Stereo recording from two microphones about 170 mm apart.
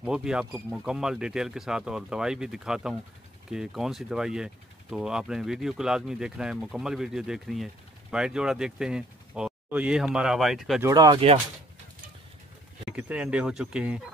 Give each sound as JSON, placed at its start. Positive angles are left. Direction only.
{"t": 0.0, "sound": "speech", "side_deg": -5}
{"t": 10.8, "sound": "speech", "side_deg": -20}
{"t": 12.9, "sound": "speech", "side_deg": -5}